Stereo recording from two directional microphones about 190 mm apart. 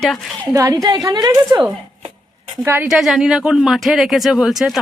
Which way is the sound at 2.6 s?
10° right (ahead or behind).